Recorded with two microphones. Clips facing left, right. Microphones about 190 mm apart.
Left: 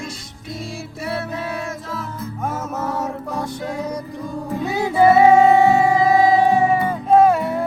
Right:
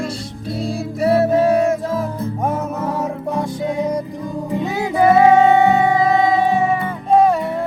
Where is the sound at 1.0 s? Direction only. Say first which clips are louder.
Right 13 dB; 45° right (ahead or behind).